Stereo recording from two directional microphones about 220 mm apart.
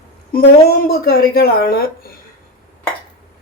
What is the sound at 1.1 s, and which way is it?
Speech, 45° left (ahead or behind).